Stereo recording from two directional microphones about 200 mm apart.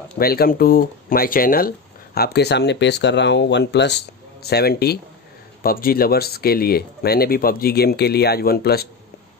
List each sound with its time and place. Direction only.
0.2 s speech: 50° left (ahead or behind)